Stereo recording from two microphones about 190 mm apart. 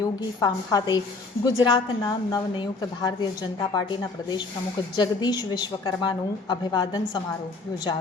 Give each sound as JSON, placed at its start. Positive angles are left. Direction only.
{"t": 0.0, "sound": "a woman's voice", "side_deg": 20}